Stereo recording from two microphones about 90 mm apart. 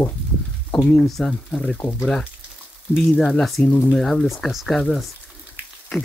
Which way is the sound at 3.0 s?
5° left (ahead or behind).